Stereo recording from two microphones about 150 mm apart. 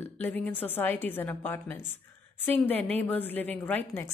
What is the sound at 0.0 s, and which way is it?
A woman's voice, 10° left (ahead or behind).